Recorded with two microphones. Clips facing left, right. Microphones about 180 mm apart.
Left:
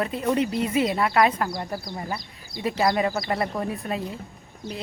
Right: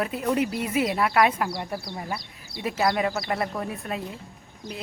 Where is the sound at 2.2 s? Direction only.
70° right (ahead or behind).